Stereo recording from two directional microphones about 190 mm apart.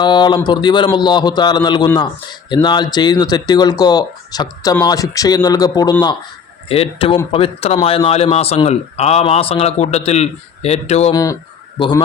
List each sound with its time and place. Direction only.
0.0 s a man's voice: 25° left (ahead or behind)
11.1 s speech: 20° left (ahead or behind)